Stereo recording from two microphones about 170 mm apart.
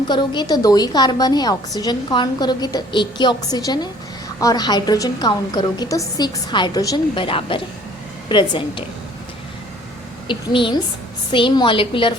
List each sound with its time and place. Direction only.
0.1 s a woman's voice: 25° left (ahead or behind)
10.2 s a woman's voice: 30° left (ahead or behind)